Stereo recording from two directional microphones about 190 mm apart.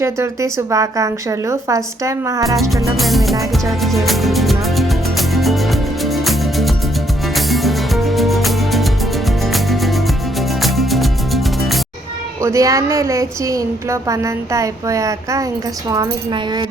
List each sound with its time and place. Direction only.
0.0 s speech: 15° right (ahead or behind)
2.9 s music: centre (ahead or behind)
12.4 s speech: 15° right (ahead or behind)